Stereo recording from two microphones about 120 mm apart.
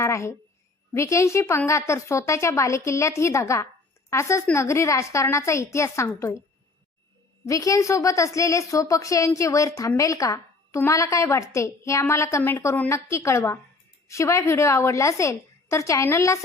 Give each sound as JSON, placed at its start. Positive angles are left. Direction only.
{"t": 0.0, "sound": "a sound", "side_deg": 25}
{"t": 0.9, "sound": "a woman's voice", "side_deg": 25}
{"t": 7.4, "sound": "a woman's voice", "side_deg": 30}